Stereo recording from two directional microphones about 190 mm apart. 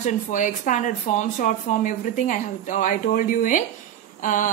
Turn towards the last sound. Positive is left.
turn(degrees=40)  # may be behind; listen again after turning